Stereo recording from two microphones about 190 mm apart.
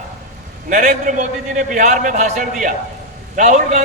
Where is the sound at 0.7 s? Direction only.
40° right (ahead or behind).